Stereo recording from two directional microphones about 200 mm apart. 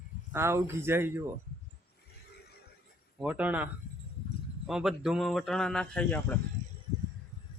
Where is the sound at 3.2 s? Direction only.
5° right (ahead or behind).